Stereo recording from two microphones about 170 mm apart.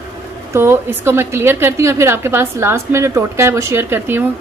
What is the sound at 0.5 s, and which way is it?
A woman's voice, 15° right (ahead or behind).